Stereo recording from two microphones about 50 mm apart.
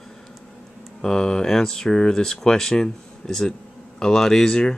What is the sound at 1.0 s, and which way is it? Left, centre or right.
Speech, centre.